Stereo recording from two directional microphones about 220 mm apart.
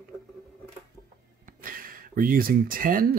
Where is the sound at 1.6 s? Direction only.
40° right (ahead or behind).